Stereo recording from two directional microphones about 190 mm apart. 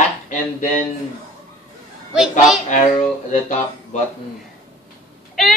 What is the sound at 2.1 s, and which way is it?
Speech, 5° right (ahead or behind).